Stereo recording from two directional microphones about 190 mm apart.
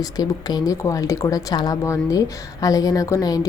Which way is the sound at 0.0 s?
20° left (ahead or behind).